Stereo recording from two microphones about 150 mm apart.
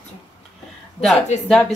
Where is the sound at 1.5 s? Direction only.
5° left (ahead or behind).